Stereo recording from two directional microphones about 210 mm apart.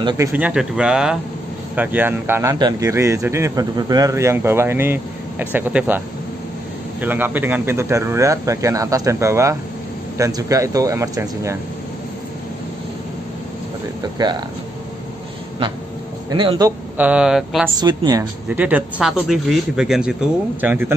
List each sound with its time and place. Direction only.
0.3 s speech: 5° right (ahead or behind)
14.1 s a woman's voice: 20° right (ahead or behind)
16.3 s speech: 20° right (ahead or behind); by 17.6 s centre (ahead or behind)
17.7 s a woman's voice: 20° right (ahead or behind)
18.5 s speech: 10° right (ahead or behind)